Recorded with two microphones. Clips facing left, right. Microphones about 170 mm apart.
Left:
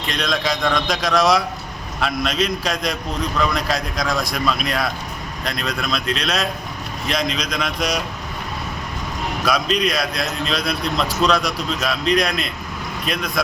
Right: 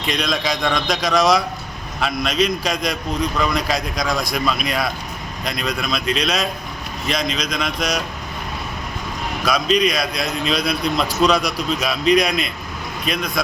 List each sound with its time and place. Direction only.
0.1 s a man's voice: centre (ahead or behind)
9.5 s a man's voice: 5° left (ahead or behind)